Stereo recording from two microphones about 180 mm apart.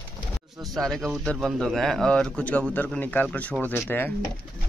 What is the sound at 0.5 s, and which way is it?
A man's voice, centre (ahead or behind).